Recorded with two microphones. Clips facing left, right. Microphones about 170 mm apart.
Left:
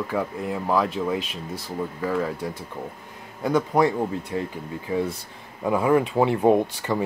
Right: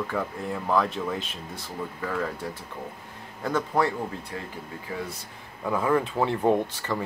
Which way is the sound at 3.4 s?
15° left (ahead or behind).